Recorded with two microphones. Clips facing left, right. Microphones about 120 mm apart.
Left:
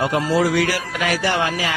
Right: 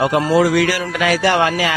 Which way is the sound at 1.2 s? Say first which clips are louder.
Right 5 dB; 75° right (ahead or behind).